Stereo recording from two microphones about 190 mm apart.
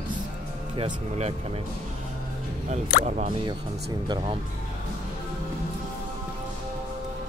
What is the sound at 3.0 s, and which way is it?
Speech, 35° right (ahead or behind).